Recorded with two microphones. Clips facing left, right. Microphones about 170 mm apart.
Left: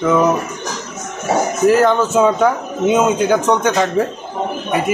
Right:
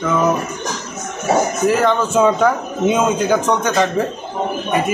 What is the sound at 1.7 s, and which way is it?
Speech, centre (ahead or behind).